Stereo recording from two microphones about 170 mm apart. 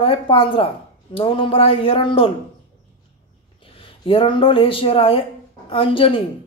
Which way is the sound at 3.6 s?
30° left (ahead or behind).